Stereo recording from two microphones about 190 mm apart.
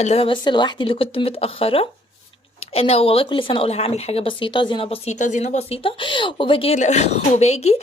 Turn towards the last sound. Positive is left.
turn(degrees=35)  # may be behind; listen again after turning